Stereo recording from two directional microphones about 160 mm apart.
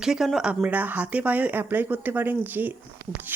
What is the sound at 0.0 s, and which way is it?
A woman's voice, 5° right (ahead or behind).